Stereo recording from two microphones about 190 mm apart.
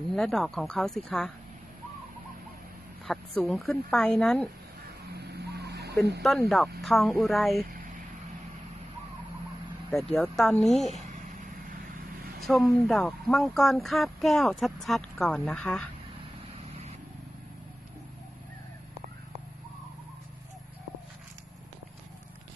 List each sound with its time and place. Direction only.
0.1 s speech: centre (ahead or behind)
3.1 s speech: centre (ahead or behind)
5.1 s a sound: 60° right (ahead or behind)
6.3 s speech: centre (ahead or behind)
9.8 s speech: centre (ahead or behind)
12.4 s vehicle: centre (ahead or behind)
12.6 s speech: 5° left (ahead or behind)